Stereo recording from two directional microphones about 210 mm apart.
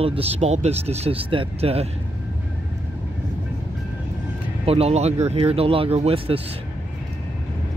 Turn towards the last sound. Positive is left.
turn(degrees=-25)  # may be behind; listen again after turning